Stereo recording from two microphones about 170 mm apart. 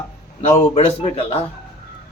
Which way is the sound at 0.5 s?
35° left (ahead or behind).